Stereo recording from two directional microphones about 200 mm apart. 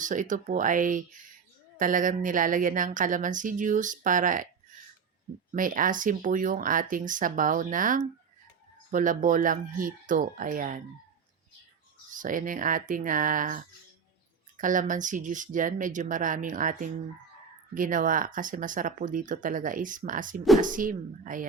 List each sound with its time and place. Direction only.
0.0 s speech: 40° right (ahead or behind)
5.5 s speech: 40° right (ahead or behind)
12.1 s speech: 40° right (ahead or behind)